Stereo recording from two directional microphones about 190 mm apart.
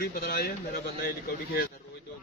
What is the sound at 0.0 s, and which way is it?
Speech, 55° left (ahead or behind).